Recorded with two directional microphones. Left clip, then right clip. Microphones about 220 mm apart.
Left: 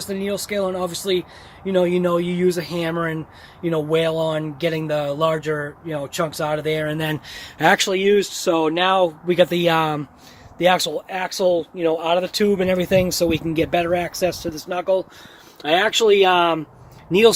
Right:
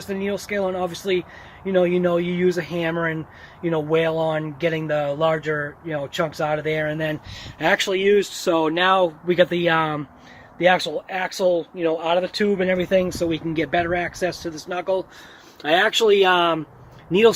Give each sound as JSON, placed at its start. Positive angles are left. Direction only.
{"t": 0.1, "sound": "speech", "side_deg": 5}
{"t": 6.9, "sound": "speech", "side_deg": 30}
{"t": 15.6, "sound": "speech", "side_deg": 5}